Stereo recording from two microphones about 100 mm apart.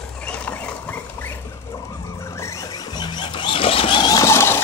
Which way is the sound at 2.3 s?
30° left (ahead or behind).